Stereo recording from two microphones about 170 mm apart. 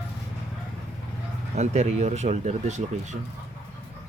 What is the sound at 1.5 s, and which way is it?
Speech, 40° right (ahead or behind).